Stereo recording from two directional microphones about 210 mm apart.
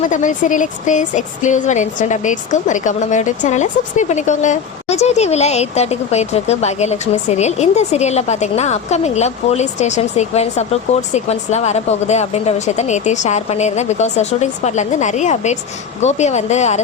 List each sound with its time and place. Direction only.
0.1 s speech: 35° left (ahead or behind)